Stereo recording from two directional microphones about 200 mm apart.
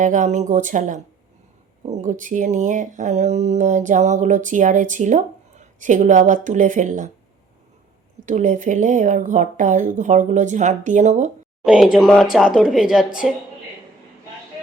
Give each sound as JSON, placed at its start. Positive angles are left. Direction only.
{"t": 0.0, "sound": "speech", "side_deg": -40}
{"t": 8.2, "sound": "speech", "side_deg": -40}
{"t": 11.6, "sound": "speech", "side_deg": -5}